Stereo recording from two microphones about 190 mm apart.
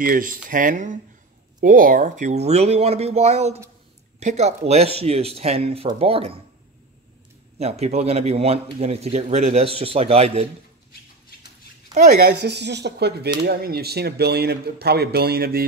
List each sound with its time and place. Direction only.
0.0 s speech: 45° right (ahead or behind); by 6.4 s 30° right (ahead or behind)
7.5 s speech: 35° right (ahead or behind)
11.9 s speech: 55° right (ahead or behind)